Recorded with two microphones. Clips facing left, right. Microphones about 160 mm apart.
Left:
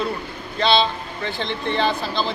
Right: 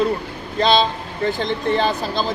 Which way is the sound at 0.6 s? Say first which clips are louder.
Right 2 dB; 40° right (ahead or behind).